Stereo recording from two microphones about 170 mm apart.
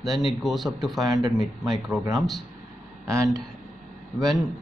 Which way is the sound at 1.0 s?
20° right (ahead or behind).